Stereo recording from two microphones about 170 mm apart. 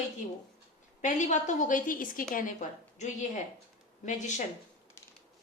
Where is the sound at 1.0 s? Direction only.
45° left (ahead or behind).